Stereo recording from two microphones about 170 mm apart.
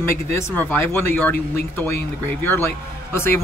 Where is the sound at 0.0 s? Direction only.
15° left (ahead or behind).